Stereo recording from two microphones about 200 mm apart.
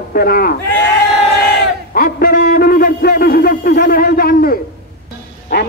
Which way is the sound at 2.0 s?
50° left (ahead or behind).